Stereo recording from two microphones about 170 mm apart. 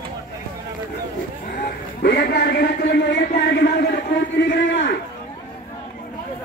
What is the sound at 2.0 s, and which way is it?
A man's voice, 70° left (ahead or behind).